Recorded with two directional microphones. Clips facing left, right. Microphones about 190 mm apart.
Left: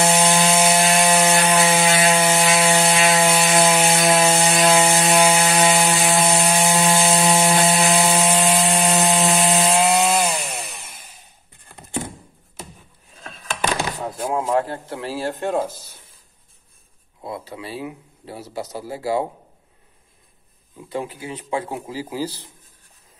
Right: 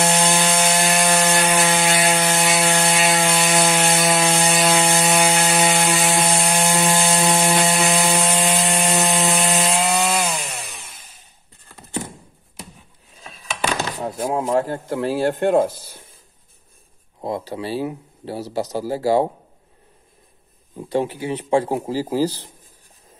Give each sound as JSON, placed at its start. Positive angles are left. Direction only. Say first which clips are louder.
{"t": 0.0, "sound": "wood", "louder": "left 2 dB", "side_deg": 0}
{"t": 2.7, "sound": "ratchet", "louder": "left 2 dB", "side_deg": 0}
{"t": 14.2, "sound": "a sound", "louder": "right 1 dB", "side_deg": -40}
{"t": 17.2, "sound": "speech", "louder": "right 6 dB", "side_deg": -35}
{"t": 20.7, "sound": "speech", "louder": "right 6 dB", "side_deg": -35}